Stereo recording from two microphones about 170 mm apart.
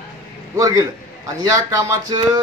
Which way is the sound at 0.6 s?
20° right (ahead or behind).